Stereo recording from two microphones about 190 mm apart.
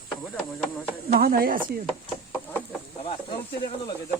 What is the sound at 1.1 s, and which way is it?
Speech, 50° right (ahead or behind).